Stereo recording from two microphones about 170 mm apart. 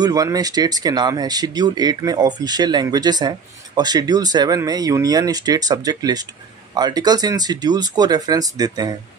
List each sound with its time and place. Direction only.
0.0 s speech: 20° right (ahead or behind)